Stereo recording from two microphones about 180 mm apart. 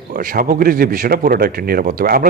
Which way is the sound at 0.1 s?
55° right (ahead or behind).